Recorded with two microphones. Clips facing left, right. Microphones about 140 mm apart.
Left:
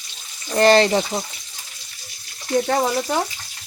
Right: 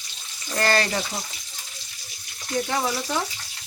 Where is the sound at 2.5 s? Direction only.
45° left (ahead or behind).